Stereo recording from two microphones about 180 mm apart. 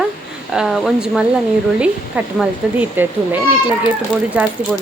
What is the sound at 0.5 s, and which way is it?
Speech, 5° right (ahead or behind).